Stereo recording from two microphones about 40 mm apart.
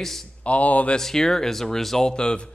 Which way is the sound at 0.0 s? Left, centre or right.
Centre.